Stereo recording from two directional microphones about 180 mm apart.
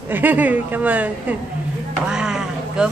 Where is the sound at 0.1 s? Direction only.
10° right (ahead or behind).